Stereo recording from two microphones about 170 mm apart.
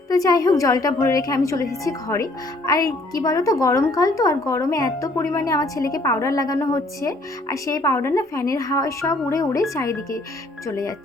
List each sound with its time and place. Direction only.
0.1 s a woman's voice: 20° left (ahead or behind)